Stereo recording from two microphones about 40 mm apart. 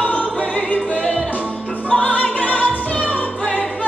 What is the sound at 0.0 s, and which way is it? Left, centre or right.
Music, left.